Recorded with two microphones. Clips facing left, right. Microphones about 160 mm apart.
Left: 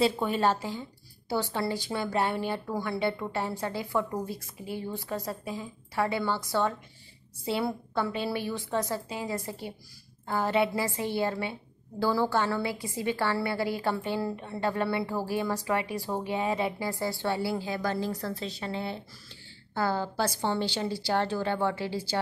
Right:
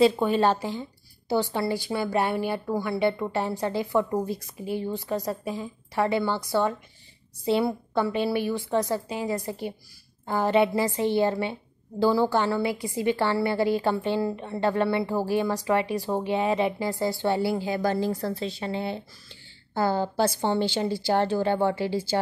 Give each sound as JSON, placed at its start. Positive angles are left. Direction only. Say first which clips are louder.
{"t": 0.0, "sound": "a woman's voice", "louder": "right 5 dB", "side_deg": -20}